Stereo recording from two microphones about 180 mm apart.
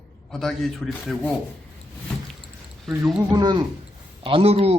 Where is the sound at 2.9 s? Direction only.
Centre (ahead or behind).